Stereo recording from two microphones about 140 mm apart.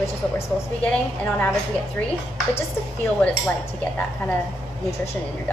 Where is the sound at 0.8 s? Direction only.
10° left (ahead or behind).